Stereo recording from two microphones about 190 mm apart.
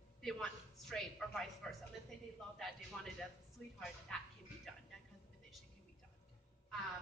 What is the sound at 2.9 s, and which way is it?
A woman's voice, centre (ahead or behind).